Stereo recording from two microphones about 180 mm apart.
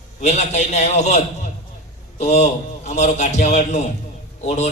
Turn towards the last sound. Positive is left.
turn(degrees=40)  # may be behind; listen again after turning